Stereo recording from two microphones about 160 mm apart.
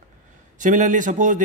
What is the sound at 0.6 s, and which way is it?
Speech, 55° right (ahead or behind).